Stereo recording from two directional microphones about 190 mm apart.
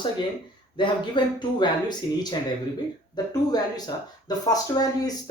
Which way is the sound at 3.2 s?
20° left (ahead or behind).